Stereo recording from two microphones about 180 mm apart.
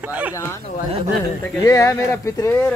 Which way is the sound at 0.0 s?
10° right (ahead or behind).